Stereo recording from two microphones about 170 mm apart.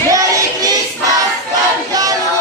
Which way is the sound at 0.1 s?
20° right (ahead or behind).